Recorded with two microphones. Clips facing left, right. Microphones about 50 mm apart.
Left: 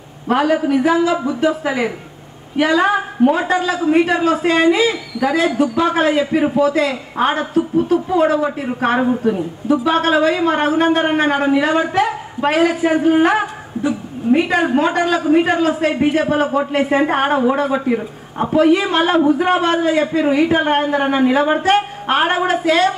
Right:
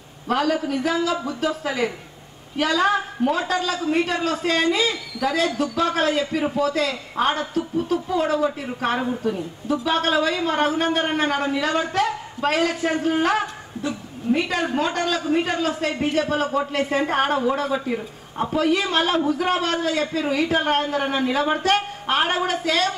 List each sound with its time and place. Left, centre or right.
0.3 s a woman's voice: centre
8.9 s a woman's voice: left
9.7 s a man's voice: centre
18.4 s a man's voice: centre